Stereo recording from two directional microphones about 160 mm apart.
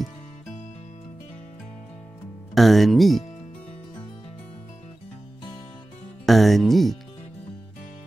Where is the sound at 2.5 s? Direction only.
Centre (ahead or behind).